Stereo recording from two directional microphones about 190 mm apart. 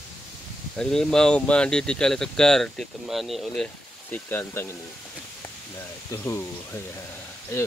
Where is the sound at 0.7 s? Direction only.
5° left (ahead or behind).